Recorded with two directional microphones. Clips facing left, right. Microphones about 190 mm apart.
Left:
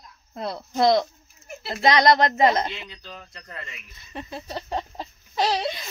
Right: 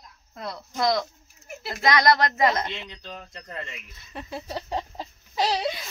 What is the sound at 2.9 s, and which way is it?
Speech, 20° right (ahead or behind).